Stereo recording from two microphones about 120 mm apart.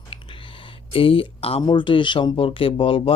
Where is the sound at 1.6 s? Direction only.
40° left (ahead or behind).